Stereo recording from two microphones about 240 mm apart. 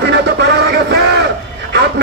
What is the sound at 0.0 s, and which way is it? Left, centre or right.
Music, right.